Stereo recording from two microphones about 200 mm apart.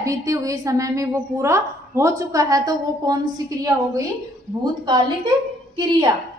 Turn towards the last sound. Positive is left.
turn(degrees=-20)  # may be behind; listen again after turning